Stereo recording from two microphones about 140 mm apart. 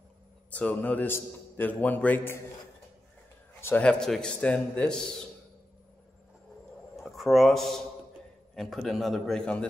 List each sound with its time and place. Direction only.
0.5 s a man's voice: 10° left (ahead or behind)
3.6 s a man's voice: 10° left (ahead or behind)
7.0 s a man's voice: centre (ahead or behind)